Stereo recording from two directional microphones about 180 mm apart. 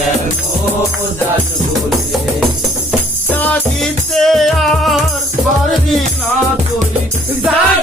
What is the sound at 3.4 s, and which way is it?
Music, 5° left (ahead or behind).